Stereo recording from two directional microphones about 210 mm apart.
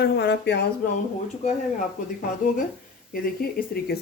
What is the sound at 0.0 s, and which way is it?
Speech, 55° left (ahead or behind).